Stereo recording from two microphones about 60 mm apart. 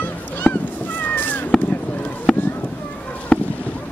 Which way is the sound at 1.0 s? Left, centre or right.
Left.